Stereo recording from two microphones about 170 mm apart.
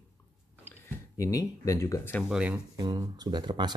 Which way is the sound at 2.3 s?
10° right (ahead or behind).